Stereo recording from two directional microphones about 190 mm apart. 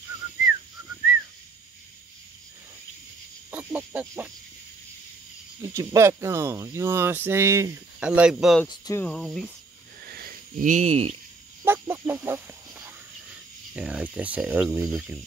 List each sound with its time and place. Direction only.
0.8 s a sound: 10° right (ahead or behind)
3.5 s cricket: 10° right (ahead or behind)
5.6 s speech: 15° right (ahead or behind)
8.6 s speech: 20° left (ahead or behind)
9.0 s speech: 5° left (ahead or behind)
10.0 s a sound: 50° right (ahead or behind); by 11.1 s 30° right (ahead or behind)
11.6 s fowl: 10° right (ahead or behind)
13.7 s speech: 5° right (ahead or behind)